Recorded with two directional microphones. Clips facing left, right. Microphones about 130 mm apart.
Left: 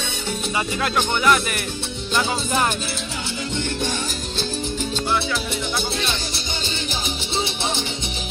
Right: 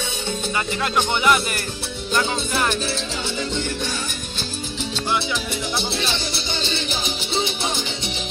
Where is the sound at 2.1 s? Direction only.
20° left (ahead or behind).